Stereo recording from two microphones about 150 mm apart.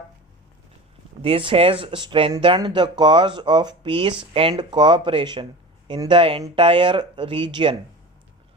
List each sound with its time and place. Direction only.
1.2 s speech: 35° right (ahead or behind)